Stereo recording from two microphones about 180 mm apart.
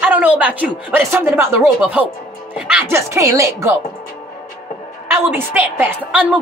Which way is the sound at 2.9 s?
15° right (ahead or behind).